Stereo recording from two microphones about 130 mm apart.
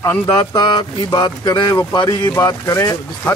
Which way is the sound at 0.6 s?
35° left (ahead or behind).